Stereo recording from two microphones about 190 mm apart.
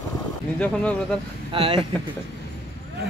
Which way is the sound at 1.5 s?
30° right (ahead or behind).